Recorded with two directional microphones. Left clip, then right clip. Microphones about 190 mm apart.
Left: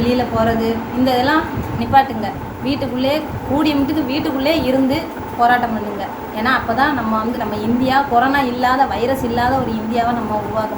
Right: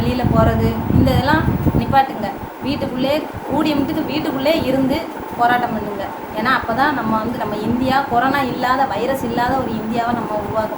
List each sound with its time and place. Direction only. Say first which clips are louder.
0.1 s a woman's voice: right 1 dB; 20° right (ahead or behind)